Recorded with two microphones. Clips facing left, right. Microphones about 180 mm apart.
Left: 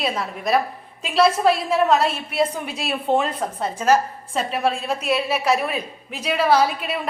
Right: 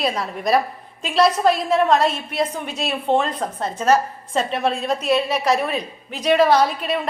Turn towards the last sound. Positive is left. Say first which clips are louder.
# right 1 dB
turn(degrees=5)  # may be behind; listen again after turning